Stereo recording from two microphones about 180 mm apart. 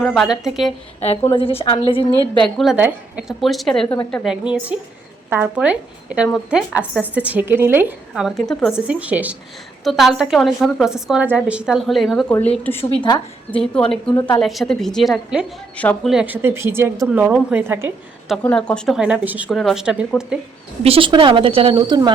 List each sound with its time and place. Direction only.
0.0 s a woman's voice: centre (ahead or behind)
1.4 s a woman's voice: 30° left (ahead or behind)
2.6 s a woman's voice: 5° right (ahead or behind)
12.8 s a woman's voice: 30° left (ahead or behind)
13.5 s a woman's voice: 5° left (ahead or behind)
14.2 s a woman's voice: 25° left (ahead or behind)
14.4 s a woman's voice: centre (ahead or behind)
15.8 s speech: 10° left (ahead or behind)
16.1 s a woman's voice: 10° right (ahead or behind)
18.4 s a woman's voice: 5° left (ahead or behind)
19.5 s a woman's voice: centre (ahead or behind)
20.8 s speech: 30° right (ahead or behind)